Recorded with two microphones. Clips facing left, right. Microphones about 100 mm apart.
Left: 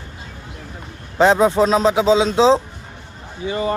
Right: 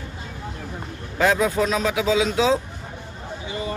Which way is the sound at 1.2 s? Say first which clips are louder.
Left 6 dB; 30° left (ahead or behind).